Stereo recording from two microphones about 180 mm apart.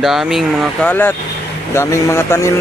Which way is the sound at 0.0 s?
Centre (ahead or behind).